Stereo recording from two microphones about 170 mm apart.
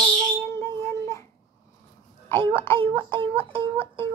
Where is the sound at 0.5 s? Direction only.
15° left (ahead or behind).